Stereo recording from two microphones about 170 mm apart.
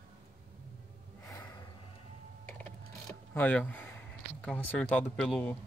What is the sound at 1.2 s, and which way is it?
Gasp, 20° left (ahead or behind).